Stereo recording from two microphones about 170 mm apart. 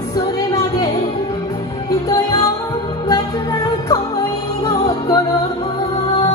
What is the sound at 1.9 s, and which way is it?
Music, 20° left (ahead or behind).